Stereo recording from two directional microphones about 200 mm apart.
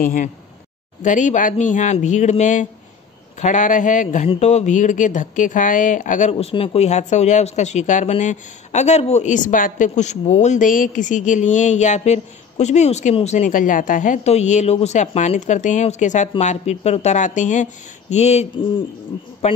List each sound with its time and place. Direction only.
0.0 s speech: 45° left (ahead or behind)
6.3 s speech: 25° left (ahead or behind)